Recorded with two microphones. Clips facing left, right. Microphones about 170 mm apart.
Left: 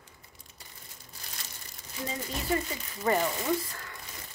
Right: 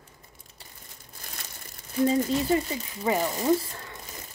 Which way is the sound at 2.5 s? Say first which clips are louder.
Right 3 dB; 30° right (ahead or behind).